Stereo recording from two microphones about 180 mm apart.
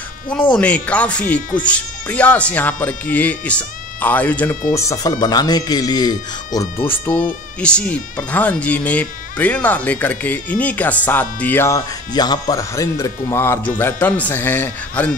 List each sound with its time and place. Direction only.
0.6 s speech: 5° left (ahead or behind)